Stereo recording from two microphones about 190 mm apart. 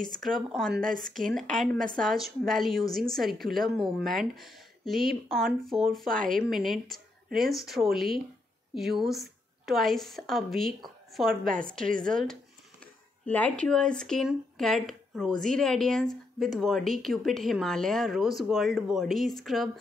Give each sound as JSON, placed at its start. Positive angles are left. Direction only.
{"t": 0.0, "sound": "a woman's voice", "side_deg": 5}